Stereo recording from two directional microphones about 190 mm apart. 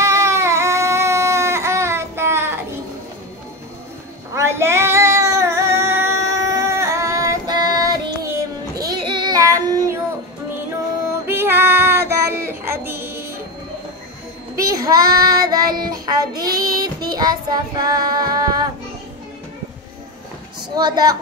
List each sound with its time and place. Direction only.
0.0 s baby cry: 15° right (ahead or behind)
4.4 s female singing: 15° right (ahead or behind)
11.2 s child singing: 10° right (ahead or behind)
14.6 s child singing: 20° right (ahead or behind)
20.7 s a woman's voice: 20° right (ahead or behind)